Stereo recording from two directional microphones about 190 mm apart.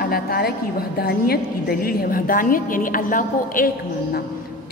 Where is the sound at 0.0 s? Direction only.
55° left (ahead or behind).